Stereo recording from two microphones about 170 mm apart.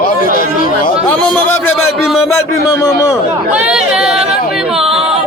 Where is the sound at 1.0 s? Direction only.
10° left (ahead or behind).